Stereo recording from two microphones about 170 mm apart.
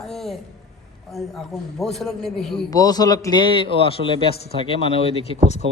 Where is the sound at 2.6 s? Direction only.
20° left (ahead or behind).